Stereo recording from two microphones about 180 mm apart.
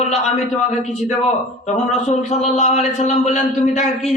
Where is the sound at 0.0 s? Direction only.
40° left (ahead or behind).